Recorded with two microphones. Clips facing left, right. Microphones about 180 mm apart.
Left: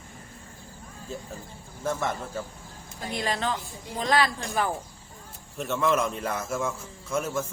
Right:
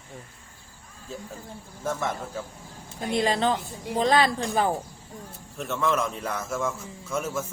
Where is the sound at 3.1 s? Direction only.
25° right (ahead or behind).